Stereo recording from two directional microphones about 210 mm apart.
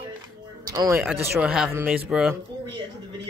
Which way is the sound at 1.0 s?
5° right (ahead or behind).